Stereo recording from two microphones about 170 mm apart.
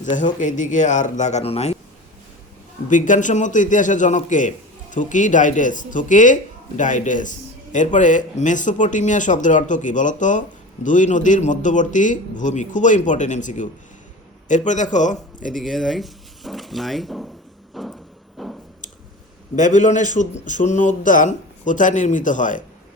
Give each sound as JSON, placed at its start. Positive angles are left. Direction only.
{"t": 0.0, "sound": "a man's voice", "side_deg": 45}
{"t": 2.9, "sound": "a man's voice", "side_deg": 50}
{"t": 15.6, "sound": "speech", "side_deg": 0}
{"t": 17.7, "sound": "vehicle", "side_deg": 0}
{"t": 18.4, "sound": "a sound", "side_deg": 0}
{"t": 19.5, "sound": "a man's voice", "side_deg": 50}